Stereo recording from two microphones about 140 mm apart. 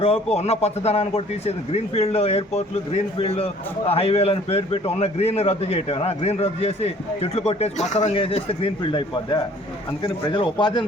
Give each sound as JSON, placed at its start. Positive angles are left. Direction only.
{"t": 0.0, "sound": "speech", "side_deg": 45}
{"t": 8.1, "sound": "a man's voice", "side_deg": 45}